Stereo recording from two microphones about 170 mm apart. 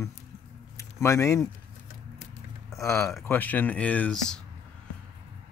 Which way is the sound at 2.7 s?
15° left (ahead or behind).